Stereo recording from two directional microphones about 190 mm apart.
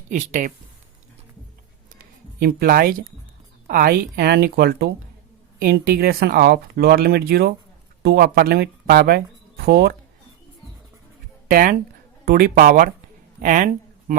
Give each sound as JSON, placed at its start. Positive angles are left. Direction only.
{"t": 0.1, "sound": "speech", "side_deg": -40}
{"t": 2.4, "sound": "speech", "side_deg": -55}
{"t": 11.4, "sound": "speech", "side_deg": -50}